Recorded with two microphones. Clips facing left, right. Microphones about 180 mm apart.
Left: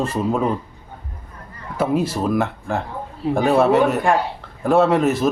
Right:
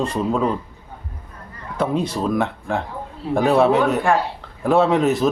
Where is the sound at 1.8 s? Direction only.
5° left (ahead or behind).